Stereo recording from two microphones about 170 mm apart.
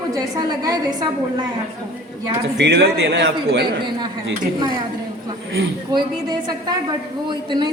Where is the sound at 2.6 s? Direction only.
75° right (ahead or behind).